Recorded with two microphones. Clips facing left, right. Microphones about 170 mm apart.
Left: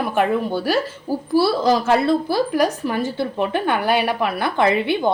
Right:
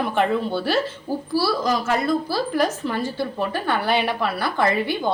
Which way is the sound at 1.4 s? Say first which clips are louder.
Left 5 dB; 25° left (ahead or behind).